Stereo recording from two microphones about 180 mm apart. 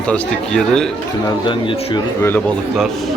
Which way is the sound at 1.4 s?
25° left (ahead or behind).